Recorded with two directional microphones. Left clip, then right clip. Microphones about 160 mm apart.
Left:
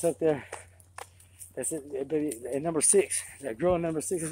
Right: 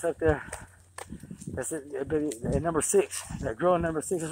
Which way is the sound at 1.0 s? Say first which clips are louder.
Right 1 dB; 50° right (ahead or behind).